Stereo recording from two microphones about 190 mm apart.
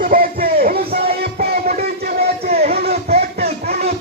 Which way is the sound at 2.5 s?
55° right (ahead or behind).